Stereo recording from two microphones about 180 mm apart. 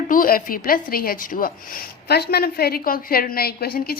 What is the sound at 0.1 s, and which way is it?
A woman's voice, 50° left (ahead or behind).